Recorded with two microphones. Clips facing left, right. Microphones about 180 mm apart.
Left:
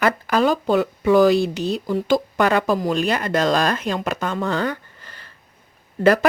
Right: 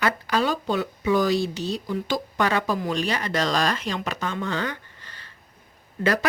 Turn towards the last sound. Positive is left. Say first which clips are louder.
# left 8 dB
turn(degrees=50)  # may be behind; listen again after turning